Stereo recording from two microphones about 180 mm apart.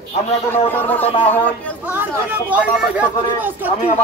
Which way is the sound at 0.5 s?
10° left (ahead or behind).